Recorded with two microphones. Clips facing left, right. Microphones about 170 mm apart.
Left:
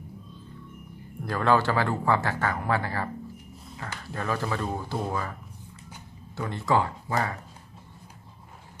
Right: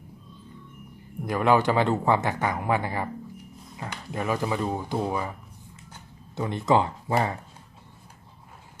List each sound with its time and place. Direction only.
1.2 s speech: 15° right (ahead or behind)
6.3 s speech: 20° right (ahead or behind)